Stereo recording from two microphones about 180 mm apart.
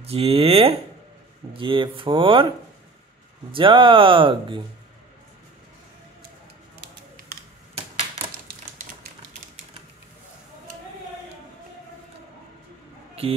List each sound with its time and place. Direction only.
0.0 s speech: 35° right (ahead or behind)
3.5 s speech: 30° right (ahead or behind)